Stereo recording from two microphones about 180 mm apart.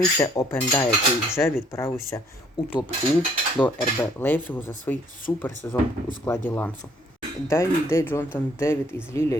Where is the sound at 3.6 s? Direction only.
10° left (ahead or behind).